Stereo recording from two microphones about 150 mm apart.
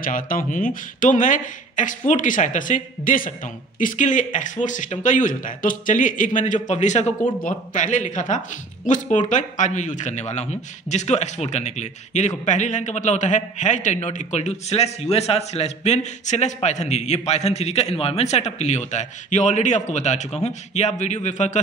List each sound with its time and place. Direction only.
0.0 s speech: 70° left (ahead or behind); by 7.2 s 50° left (ahead or behind)
7.3 s a man's voice: 60° left (ahead or behind)